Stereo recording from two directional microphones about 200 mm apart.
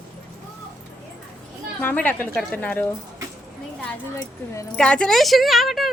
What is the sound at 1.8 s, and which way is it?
A woman's voice, 10° left (ahead or behind).